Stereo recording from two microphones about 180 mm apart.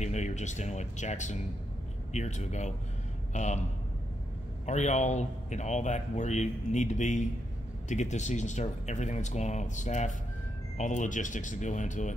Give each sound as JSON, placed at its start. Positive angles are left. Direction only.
{"t": 0.0, "sound": "a man's voice", "side_deg": 40}
{"t": 4.6, "sound": "a man's voice", "side_deg": 40}